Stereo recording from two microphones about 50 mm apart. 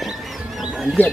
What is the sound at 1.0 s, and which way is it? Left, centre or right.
Speech, left.